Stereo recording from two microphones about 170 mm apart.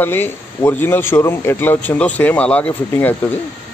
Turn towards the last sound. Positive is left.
turn(degrees=10)  # may be behind; listen again after turning